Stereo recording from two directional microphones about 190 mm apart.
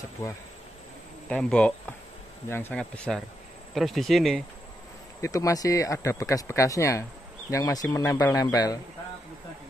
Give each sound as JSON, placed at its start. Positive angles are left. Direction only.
{"t": 1.3, "sound": "speech", "side_deg": 5}
{"t": 5.2, "sound": "speech", "side_deg": 15}